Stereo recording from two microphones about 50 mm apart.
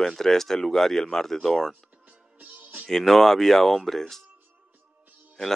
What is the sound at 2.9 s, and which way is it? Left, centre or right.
Speech, centre.